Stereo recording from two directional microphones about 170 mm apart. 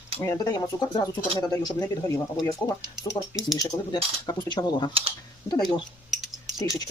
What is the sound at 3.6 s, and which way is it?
Speech, 20° left (ahead or behind).